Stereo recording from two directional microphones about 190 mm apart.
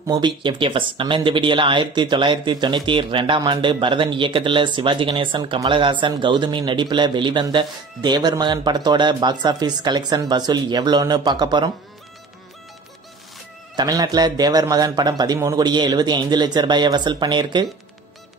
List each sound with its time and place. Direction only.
0.0 s speech: 25° right (ahead or behind)
13.7 s speech: 20° right (ahead or behind)